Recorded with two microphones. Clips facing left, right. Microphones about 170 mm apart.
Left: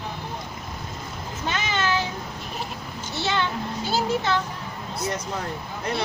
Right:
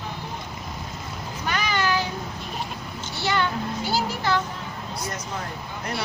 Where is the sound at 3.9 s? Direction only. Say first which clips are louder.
Left 3 dB; 20° left (ahead or behind).